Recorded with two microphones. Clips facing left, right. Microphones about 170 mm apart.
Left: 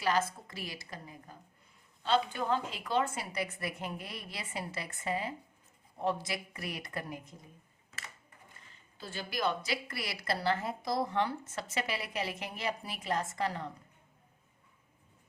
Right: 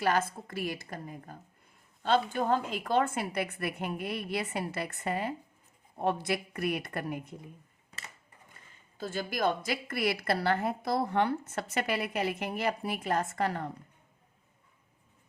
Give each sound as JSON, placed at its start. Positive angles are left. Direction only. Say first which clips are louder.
{"t": 0.0, "sound": "a woman's voice", "louder": "right 2 dB", "side_deg": -55}
{"t": 9.0, "sound": "a woman's voice", "louder": "right 5 dB", "side_deg": -45}